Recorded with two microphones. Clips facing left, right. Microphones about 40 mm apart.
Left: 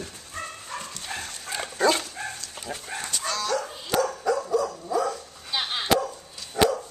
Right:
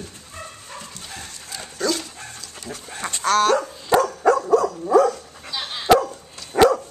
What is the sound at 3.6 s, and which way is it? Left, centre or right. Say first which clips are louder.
Dog: right 6 dB; right.